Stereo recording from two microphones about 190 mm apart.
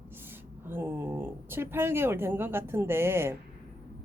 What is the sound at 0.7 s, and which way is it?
Speech, 10° right (ahead or behind).